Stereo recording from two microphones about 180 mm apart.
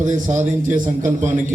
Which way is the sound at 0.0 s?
45° right (ahead or behind).